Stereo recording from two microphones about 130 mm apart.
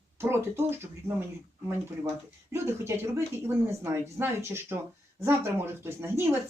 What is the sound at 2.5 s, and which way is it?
Speech, 20° right (ahead or behind).